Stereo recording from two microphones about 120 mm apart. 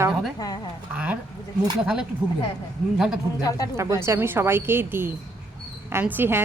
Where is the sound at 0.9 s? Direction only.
10° right (ahead or behind).